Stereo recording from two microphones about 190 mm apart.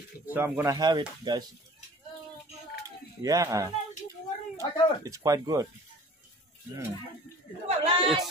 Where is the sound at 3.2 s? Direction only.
20° right (ahead or behind).